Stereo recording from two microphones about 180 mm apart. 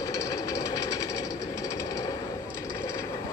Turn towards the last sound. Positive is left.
turn(degrees=15)  # may be behind; listen again after turning